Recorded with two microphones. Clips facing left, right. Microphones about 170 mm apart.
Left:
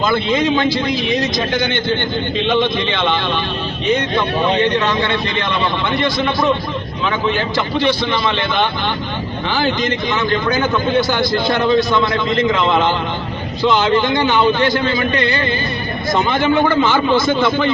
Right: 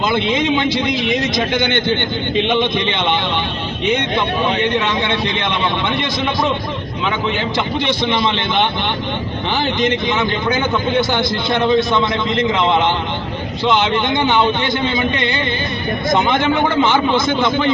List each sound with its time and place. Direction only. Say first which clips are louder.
0.1 s a man's voice: left 1 dB; 20° right (ahead or behind)
7.8 s a man's voice: left 2 dB; 20° right (ahead or behind)
13.9 s a man's voice: left 1 dB; 20° right (ahead or behind)